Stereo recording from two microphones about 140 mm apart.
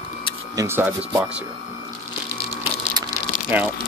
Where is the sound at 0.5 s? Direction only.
15° right (ahead or behind).